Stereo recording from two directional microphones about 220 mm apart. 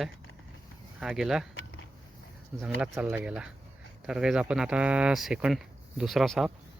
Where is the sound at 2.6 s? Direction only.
10° right (ahead or behind).